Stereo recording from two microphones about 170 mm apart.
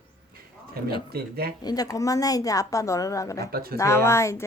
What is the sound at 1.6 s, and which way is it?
A woman's voice, 20° left (ahead or behind).